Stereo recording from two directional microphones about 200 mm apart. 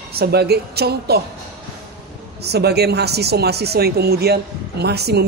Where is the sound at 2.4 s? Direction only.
55° right (ahead or behind).